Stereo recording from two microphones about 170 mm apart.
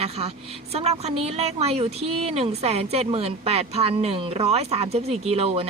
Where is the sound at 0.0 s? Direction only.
35° right (ahead or behind).